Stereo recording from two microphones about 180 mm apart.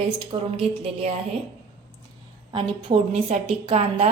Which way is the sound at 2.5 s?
30° right (ahead or behind).